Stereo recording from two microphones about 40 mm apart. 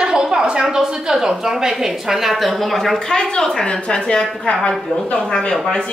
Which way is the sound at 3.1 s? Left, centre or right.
Centre.